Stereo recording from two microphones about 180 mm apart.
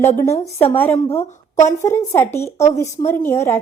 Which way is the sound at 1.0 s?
35° left (ahead or behind).